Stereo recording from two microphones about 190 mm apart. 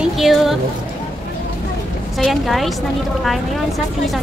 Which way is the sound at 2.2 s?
Centre (ahead or behind).